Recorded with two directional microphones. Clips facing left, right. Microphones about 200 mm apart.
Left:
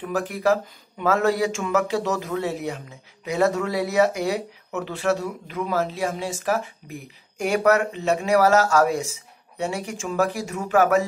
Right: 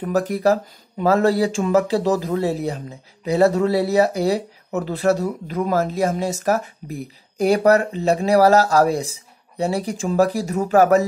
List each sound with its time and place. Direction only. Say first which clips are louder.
0.0 s speech: right 5 dB; 40° right (ahead or behind)